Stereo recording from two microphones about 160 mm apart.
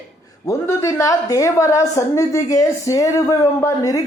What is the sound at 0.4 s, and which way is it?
A woman's voice, 20° left (ahead or behind).